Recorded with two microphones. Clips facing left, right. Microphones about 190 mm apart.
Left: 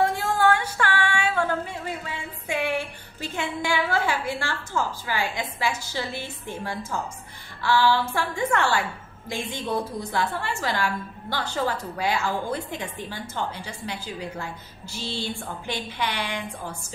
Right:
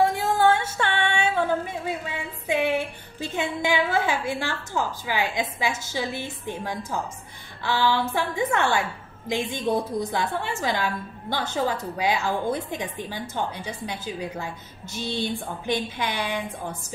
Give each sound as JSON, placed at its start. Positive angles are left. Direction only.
{"t": 0.0, "sound": "music", "side_deg": -20}
{"t": 2.0, "sound": "a woman's voice", "side_deg": -15}